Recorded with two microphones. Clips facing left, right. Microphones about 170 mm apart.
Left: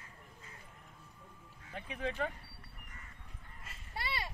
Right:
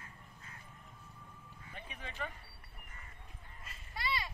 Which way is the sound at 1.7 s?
85° left.